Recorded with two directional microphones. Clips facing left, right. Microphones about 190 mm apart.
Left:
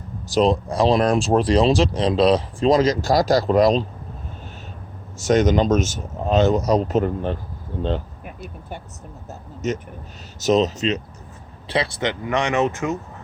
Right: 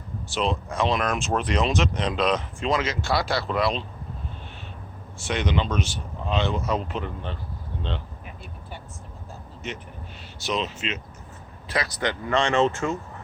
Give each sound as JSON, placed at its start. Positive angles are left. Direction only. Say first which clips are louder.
{"t": 0.3, "sound": "speech", "louder": "left 9 dB", "side_deg": 40}
{"t": 5.1, "sound": "speech", "louder": "left 9 dB", "side_deg": 40}
{"t": 11.7, "sound": "speech", "louder": "left 4 dB", "side_deg": 25}